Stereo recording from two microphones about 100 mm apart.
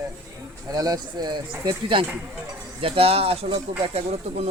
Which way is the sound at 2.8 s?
75° right (ahead or behind).